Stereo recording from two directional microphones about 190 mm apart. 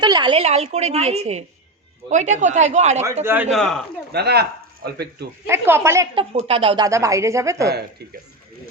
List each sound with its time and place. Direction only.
0.0 s a woman's voice: 25° right (ahead or behind)
3.5 s speech: centre (ahead or behind)
4.1 s speech: 60° right (ahead or behind)
5.5 s speech: 10° right (ahead or behind)
6.3 s speech: 30° right (ahead or behind)
7.7 s speech: 60° right (ahead or behind)